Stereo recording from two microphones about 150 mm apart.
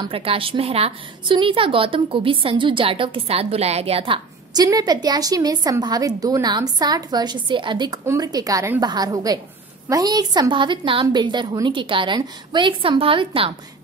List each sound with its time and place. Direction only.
0.1 s a woman's voice: 40° right (ahead or behind)
4.6 s a woman's voice: 25° right (ahead or behind)